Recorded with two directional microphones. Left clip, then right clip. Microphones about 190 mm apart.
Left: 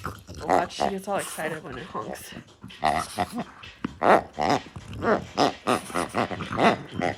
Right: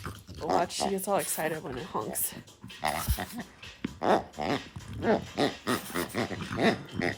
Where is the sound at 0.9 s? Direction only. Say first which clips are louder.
Even; 25° right (ahead or behind).